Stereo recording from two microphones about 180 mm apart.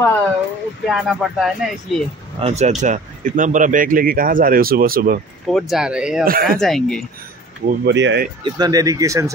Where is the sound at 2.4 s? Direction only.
35° right (ahead or behind); by 5.2 s 55° right (ahead or behind).